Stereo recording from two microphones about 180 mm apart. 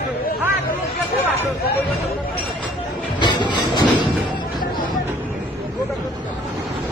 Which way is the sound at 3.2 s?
25° left (ahead or behind).